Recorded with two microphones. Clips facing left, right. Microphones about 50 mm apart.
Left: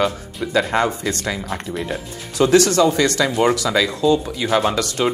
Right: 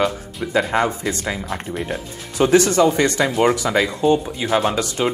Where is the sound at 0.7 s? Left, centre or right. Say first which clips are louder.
Even; centre.